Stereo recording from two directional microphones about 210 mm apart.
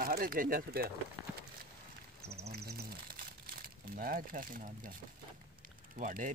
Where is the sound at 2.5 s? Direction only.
50° right (ahead or behind).